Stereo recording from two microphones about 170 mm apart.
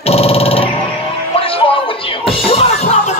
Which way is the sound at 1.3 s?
35° left (ahead or behind).